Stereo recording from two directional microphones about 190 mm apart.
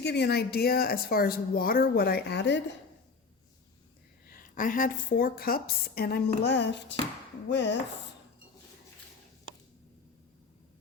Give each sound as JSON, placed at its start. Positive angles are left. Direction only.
{"t": 0.0, "sound": "speech", "side_deg": 60}
{"t": 4.4, "sound": "a woman's voice", "side_deg": 45}